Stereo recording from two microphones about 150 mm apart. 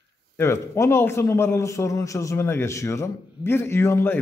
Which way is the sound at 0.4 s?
15° left (ahead or behind).